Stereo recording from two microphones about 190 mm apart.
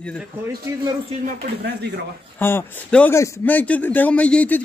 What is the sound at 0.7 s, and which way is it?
Speech, 15° right (ahead or behind).